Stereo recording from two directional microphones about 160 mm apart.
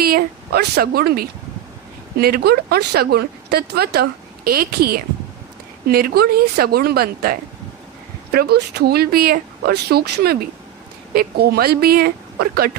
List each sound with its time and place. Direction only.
0.0 s speech: 75° right (ahead or behind)